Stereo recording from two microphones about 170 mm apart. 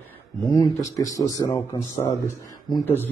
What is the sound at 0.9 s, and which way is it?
Speech, 20° left (ahead or behind).